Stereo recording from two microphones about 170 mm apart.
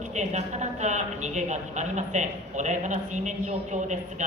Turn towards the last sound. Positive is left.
turn(degrees=-45)  # may be behind; listen again after turning